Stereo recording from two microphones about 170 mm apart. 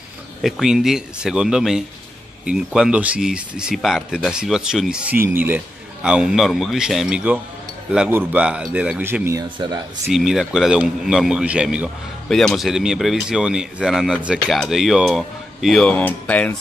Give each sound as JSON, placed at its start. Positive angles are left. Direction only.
{"t": 0.4, "sound": "speech", "side_deg": 0}
{"t": 9.6, "sound": "speech", "side_deg": -25}
{"t": 10.1, "sound": "speech", "side_deg": 0}